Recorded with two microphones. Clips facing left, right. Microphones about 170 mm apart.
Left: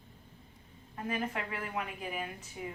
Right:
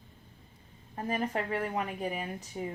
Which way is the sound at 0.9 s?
40° right (ahead or behind).